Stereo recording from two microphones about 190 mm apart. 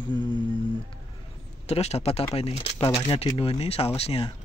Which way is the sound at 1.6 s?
35° left (ahead or behind).